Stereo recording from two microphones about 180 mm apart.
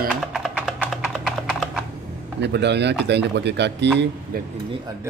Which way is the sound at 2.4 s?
70° right (ahead or behind).